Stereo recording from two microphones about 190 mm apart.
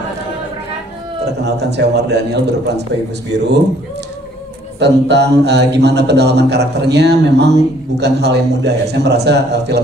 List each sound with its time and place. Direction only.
1.2 s speech: 60° right (ahead or behind)
4.7 s speech: 65° right (ahead or behind)